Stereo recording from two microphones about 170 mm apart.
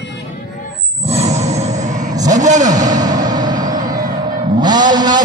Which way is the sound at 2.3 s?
45° right (ahead or behind).